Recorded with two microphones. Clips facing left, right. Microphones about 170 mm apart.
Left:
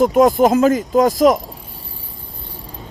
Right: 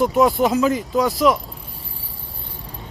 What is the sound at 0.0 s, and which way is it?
Speech, 45° left (ahead or behind).